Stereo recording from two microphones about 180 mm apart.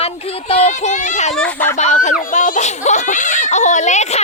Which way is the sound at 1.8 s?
40° left (ahead or behind).